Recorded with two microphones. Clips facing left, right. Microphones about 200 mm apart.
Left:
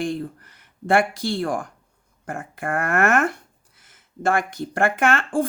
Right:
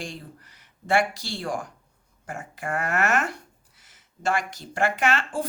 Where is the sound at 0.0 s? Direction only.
55° left (ahead or behind).